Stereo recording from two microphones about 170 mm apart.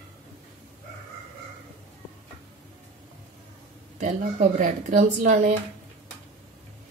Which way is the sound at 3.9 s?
50° right (ahead or behind).